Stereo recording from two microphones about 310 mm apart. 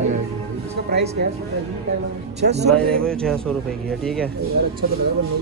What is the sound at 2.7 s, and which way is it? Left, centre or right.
Speech, centre.